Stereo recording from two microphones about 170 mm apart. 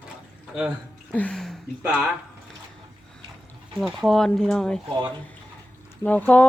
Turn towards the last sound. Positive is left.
turn(degrees=10)  # may be behind; listen again after turning